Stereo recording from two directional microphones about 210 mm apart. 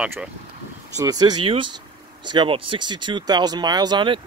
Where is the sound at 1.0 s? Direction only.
15° right (ahead or behind).